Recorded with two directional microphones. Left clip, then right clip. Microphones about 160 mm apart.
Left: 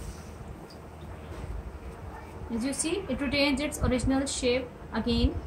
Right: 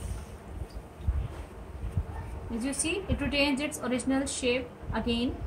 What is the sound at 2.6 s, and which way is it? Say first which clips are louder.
A woman's voice: left 1 dB; centre (ahead or behind).